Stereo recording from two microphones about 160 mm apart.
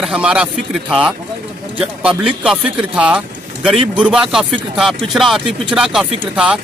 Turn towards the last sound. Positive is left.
turn(degrees=-5)  # may be behind; listen again after turning